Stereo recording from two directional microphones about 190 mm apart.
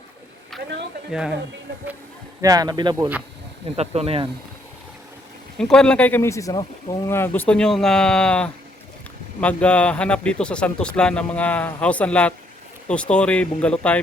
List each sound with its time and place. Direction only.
0.5 s speech: centre (ahead or behind)
2.4 s speech: 20° right (ahead or behind)
3.8 s speech: 30° right (ahead or behind)
5.5 s speech: 5° left (ahead or behind)